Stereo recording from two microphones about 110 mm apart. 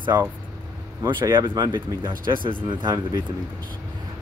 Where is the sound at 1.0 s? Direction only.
45° right (ahead or behind).